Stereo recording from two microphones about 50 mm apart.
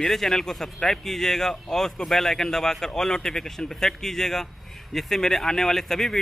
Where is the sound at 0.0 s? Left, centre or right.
Centre.